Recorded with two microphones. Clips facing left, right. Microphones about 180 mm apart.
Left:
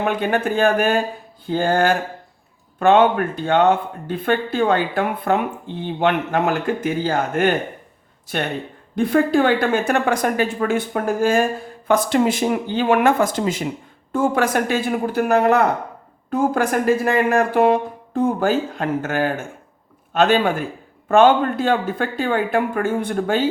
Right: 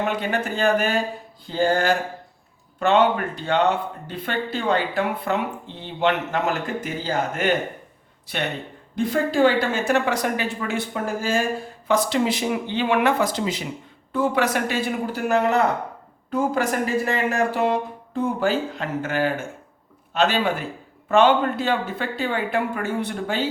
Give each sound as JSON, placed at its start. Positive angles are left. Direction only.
{"t": 0.0, "sound": "speech", "side_deg": 55}
{"t": 1.5, "sound": "a sound", "side_deg": 55}
{"t": 2.7, "sound": "speech", "side_deg": 50}
{"t": 9.0, "sound": "speech", "side_deg": 55}